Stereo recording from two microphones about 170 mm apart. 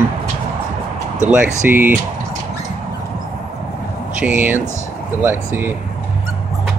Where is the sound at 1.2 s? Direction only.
10° right (ahead or behind).